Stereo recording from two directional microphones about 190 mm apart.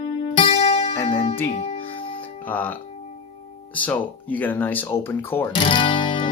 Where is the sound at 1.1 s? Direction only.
30° left (ahead or behind).